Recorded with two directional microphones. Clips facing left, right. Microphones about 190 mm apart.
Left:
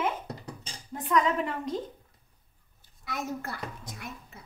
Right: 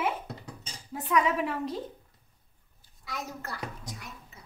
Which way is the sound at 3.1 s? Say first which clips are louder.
Left 4 dB; 50° left (ahead or behind).